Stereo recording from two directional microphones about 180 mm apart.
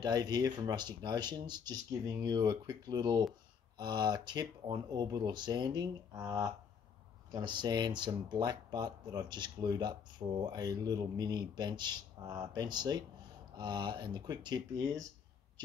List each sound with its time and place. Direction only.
0.0 s speech: 20° right (ahead or behind)